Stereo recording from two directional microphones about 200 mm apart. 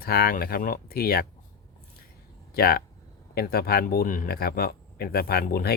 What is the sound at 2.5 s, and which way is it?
Speech, 50° left (ahead or behind).